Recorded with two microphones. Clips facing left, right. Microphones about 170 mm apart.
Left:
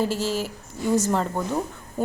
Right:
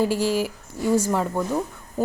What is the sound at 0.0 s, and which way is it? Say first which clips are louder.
A woman's voice: right 3 dB; 15° right (ahead or behind).